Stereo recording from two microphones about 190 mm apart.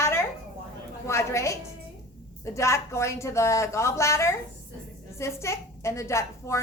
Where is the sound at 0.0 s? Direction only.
15° left (ahead or behind).